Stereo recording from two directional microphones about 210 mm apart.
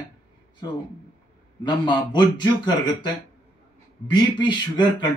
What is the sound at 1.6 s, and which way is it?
Speech, 20° left (ahead or behind).